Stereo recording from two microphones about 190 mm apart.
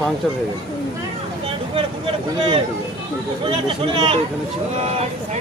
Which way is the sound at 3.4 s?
30° right (ahead or behind).